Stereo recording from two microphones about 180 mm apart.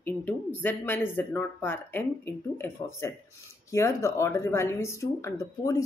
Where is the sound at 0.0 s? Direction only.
10° left (ahead or behind).